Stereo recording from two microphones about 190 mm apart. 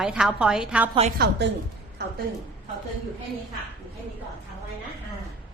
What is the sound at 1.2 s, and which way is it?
Speech, 65° right (ahead or behind).